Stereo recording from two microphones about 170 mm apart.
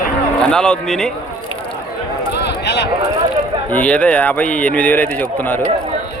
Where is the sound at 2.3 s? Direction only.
85° left.